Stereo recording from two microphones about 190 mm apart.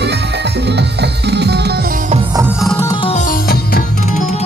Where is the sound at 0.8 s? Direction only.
60° right (ahead or behind).